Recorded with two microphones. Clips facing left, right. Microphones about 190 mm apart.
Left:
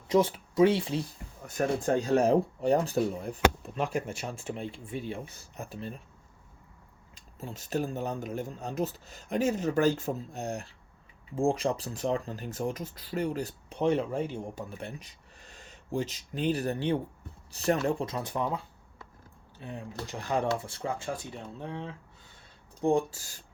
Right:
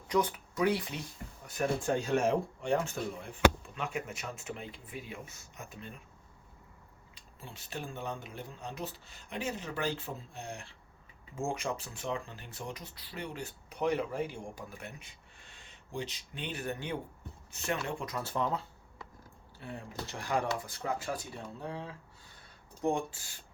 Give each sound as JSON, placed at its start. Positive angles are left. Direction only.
{"t": 0.1, "sound": "speech", "side_deg": 25}
{"t": 1.5, "sound": "speech", "side_deg": 40}
{"t": 7.2, "sound": "speech", "side_deg": 40}
{"t": 13.7, "sound": "speech", "side_deg": 25}
{"t": 18.0, "sound": "speech", "side_deg": 20}
{"t": 22.8, "sound": "speech", "side_deg": 35}